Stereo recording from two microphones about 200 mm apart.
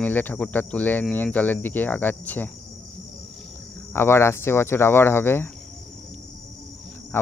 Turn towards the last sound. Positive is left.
turn(degrees=10)  # may be behind; listen again after turning